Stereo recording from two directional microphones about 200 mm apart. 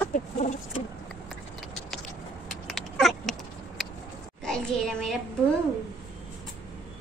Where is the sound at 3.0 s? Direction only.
Centre (ahead or behind).